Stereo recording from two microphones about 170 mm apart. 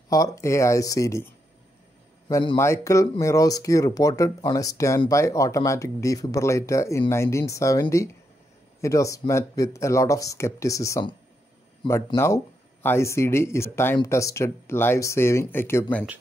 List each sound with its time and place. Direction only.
0.1 s speech: 20° left (ahead or behind)
12.8 s speech: 15° left (ahead or behind)